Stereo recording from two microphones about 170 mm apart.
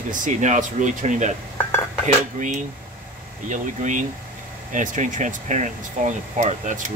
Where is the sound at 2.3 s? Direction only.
45° right (ahead or behind).